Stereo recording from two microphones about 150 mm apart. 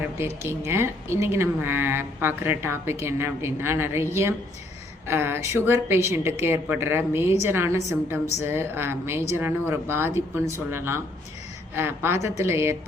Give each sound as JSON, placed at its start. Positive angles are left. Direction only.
{"t": 0.4, "sound": "a woman's voice", "side_deg": -15}